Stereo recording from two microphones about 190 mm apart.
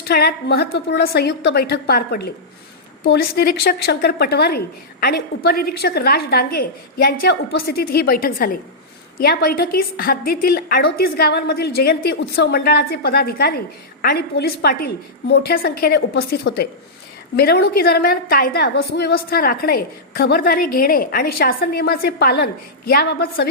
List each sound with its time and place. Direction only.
0.1 s a woman's voice: 55° left (ahead or behind)